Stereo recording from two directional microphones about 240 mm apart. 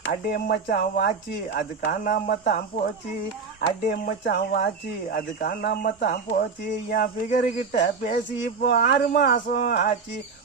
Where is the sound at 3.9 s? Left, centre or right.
Left.